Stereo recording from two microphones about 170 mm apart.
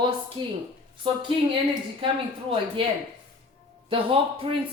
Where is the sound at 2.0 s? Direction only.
30° right (ahead or behind).